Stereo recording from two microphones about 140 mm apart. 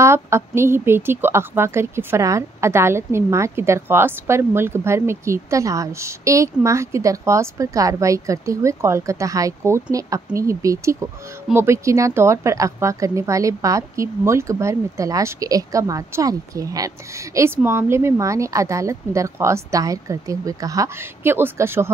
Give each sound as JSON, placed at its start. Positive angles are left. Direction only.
{"t": 0.0, "sound": "a woman's voice", "side_deg": -20}